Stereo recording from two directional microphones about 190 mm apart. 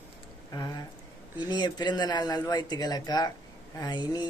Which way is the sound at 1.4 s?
20° left (ahead or behind).